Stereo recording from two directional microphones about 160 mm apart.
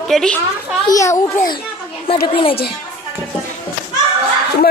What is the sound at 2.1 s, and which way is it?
Speech, 30° left (ahead or behind).